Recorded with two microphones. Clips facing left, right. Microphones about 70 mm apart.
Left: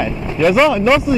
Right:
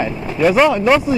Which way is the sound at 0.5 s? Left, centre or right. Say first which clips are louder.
Even; centre.